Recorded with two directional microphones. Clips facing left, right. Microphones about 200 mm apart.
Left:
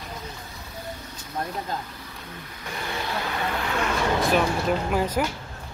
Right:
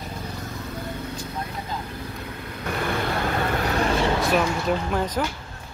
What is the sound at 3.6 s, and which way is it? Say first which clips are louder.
Vehicle: right 3 dB; 35° right (ahead or behind).